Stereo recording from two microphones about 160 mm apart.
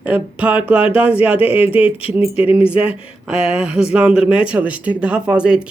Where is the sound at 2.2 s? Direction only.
10° right (ahead or behind).